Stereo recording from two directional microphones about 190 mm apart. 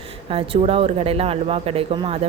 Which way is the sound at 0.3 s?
30° right (ahead or behind).